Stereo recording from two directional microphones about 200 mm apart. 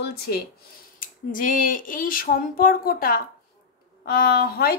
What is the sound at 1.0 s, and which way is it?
Speech, 40° left (ahead or behind).